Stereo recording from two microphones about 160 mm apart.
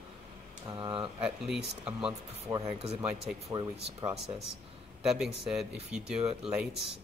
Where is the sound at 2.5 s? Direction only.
15° right (ahead or behind).